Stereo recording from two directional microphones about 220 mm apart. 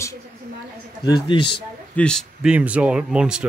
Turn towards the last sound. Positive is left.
turn(degrees=-5)  # may be behind; listen again after turning